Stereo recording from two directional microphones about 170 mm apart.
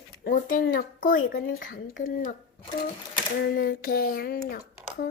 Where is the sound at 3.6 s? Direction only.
60° left (ahead or behind).